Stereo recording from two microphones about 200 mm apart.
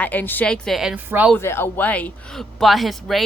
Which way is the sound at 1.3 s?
10° left (ahead or behind).